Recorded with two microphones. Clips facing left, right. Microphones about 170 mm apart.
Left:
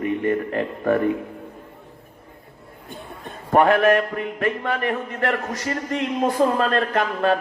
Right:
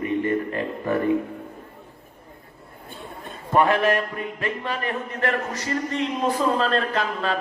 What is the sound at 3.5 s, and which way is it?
A man's voice, 55° left (ahead or behind).